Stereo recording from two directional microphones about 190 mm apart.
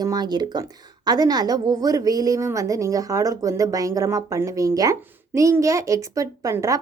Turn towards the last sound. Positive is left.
turn(degrees=-15)  # may be behind; listen again after turning